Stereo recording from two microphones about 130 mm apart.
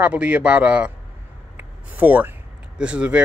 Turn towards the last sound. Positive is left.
turn(degrees=-10)  # may be behind; listen again after turning